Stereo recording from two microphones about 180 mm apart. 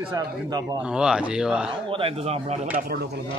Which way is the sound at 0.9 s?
5° right (ahead or behind).